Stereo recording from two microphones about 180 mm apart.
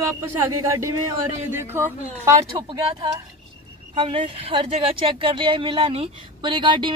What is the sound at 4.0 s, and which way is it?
Speech, 30° right (ahead or behind).